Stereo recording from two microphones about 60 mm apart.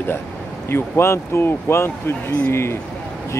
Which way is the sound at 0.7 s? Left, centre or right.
Left.